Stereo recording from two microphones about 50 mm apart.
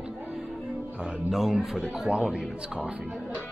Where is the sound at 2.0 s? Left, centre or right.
Centre.